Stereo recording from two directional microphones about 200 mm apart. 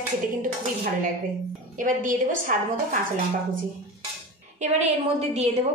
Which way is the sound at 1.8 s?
40° right (ahead or behind).